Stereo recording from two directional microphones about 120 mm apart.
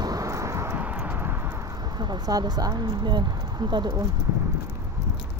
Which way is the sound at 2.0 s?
35° right (ahead or behind).